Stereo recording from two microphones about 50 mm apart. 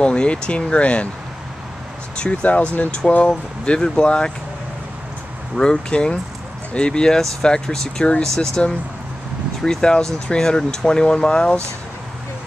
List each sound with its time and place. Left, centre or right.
0.0 s speech: left
2.1 s speech: left
5.6 s speech: centre